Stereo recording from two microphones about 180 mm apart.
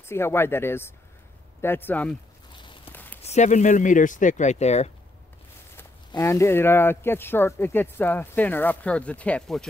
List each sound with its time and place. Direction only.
0.0 s speech: 15° left (ahead or behind)
2.5 s walk: 25° left (ahead or behind)
2.9 s a sound: 10° left (ahead or behind)
3.2 s speech: 40° left (ahead or behind)
5.8 s speech: 15° left (ahead or behind)